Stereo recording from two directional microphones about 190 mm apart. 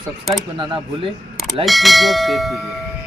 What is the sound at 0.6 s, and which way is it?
Speech, 25° right (ahead or behind).